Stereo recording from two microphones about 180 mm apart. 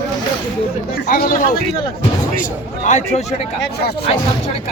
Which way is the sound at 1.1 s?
50° left (ahead or behind).